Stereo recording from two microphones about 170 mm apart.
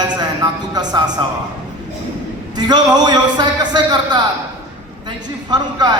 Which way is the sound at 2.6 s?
25° right (ahead or behind).